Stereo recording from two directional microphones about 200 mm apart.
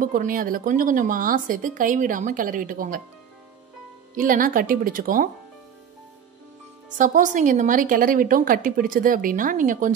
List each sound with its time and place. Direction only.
0.0 s a woman's voice: 45° right (ahead or behind)
4.1 s a woman's voice: 45° right (ahead or behind)
7.0 s a woman's voice: 40° right (ahead or behind)